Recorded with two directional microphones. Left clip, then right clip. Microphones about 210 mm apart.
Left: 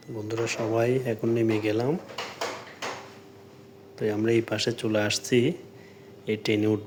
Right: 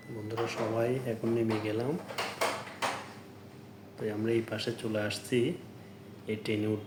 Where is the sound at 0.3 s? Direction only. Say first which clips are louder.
Left 5 dB; 50° left (ahead or behind).